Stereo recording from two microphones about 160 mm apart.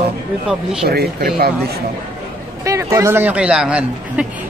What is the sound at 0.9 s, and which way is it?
Speech, 75° right (ahead or behind).